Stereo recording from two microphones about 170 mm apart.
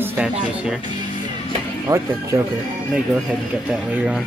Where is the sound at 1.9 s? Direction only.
20° right (ahead or behind).